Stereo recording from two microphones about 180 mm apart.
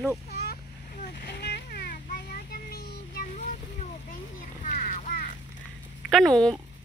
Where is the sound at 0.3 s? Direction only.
60° left (ahead or behind).